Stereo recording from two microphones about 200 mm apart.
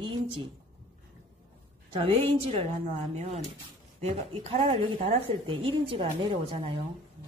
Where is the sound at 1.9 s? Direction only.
30° right (ahead or behind).